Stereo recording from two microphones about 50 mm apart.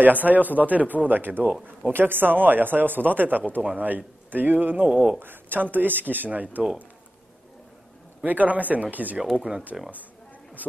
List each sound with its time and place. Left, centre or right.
0.0 s speech: right
1.9 s speech: right
4.8 s speech: right
5.2 s speech: right
8.3 s speech: right
9.7 s speech: centre